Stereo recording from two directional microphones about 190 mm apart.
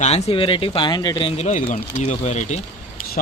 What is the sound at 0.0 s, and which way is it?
Speech, 30° left (ahead or behind).